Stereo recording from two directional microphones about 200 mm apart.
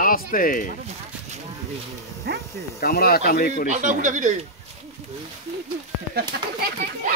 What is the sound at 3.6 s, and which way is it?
Speech, 40° right (ahead or behind).